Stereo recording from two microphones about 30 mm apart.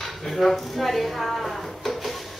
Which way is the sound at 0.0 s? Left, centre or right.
Centre.